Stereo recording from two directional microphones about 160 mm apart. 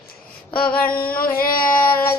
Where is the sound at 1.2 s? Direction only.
65° left (ahead or behind).